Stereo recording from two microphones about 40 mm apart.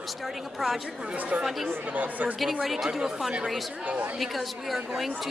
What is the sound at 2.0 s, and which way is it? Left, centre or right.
Speech, right.